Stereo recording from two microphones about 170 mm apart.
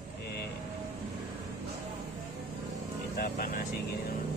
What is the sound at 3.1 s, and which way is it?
Vehicle, 60° left (ahead or behind).